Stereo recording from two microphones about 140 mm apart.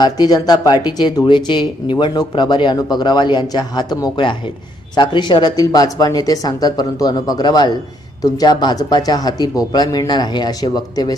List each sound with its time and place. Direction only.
0.0 s speech: 30° left (ahead or behind)